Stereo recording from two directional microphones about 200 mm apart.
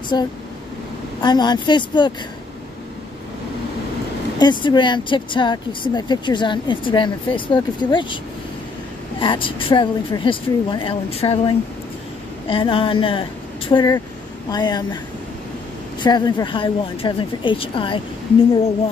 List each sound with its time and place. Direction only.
1.2 s speech: 20° left (ahead or behind)
4.4 s speech: 25° left (ahead or behind)
9.2 s speech: 25° left (ahead or behind)
16.0 s speech: 20° left (ahead or behind)